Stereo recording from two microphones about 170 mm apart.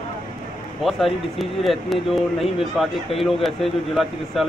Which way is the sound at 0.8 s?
Centre (ahead or behind).